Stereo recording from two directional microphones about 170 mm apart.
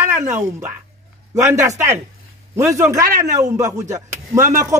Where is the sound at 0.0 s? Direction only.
15° right (ahead or behind).